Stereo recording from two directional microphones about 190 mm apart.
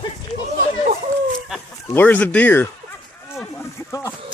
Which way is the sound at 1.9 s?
10° left (ahead or behind).